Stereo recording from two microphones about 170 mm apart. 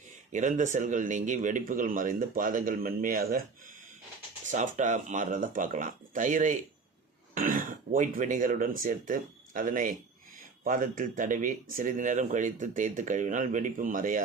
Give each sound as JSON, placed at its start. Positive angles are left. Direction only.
{"t": 0.3, "sound": "speech", "side_deg": -45}
{"t": 4.4, "sound": "speech", "side_deg": -45}